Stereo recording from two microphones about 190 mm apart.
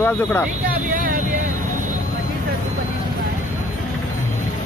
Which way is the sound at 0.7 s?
50° right (ahead or behind).